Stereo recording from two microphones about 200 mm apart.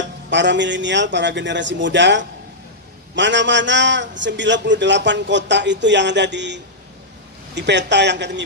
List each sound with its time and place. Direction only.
0.3 s a man's voice: 65° right (ahead or behind)